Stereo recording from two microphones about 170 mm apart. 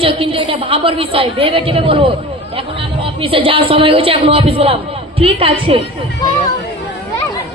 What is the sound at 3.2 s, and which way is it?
Speech, 30° right (ahead or behind).